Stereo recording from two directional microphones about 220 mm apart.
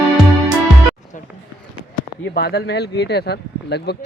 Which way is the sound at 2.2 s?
45° left (ahead or behind).